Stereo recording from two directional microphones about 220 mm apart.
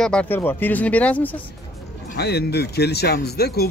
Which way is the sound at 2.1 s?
45° left (ahead or behind).